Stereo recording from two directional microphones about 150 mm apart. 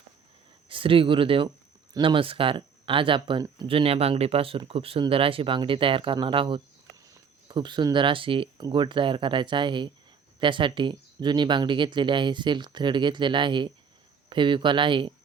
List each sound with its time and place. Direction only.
0.7 s speech: 35° right (ahead or behind)